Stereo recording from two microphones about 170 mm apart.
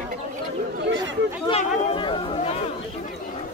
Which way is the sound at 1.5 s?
35° left (ahead or behind).